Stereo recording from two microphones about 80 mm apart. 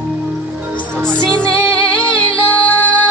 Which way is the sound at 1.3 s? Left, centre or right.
Centre.